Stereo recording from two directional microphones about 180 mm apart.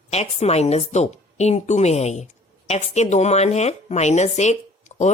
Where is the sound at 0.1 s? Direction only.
35° left (ahead or behind).